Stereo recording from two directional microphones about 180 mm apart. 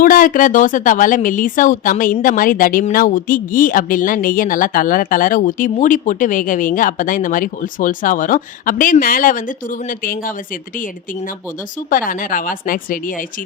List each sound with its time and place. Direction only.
0.0 s speech: 50° left (ahead or behind)
11.9 s speech: 50° left (ahead or behind)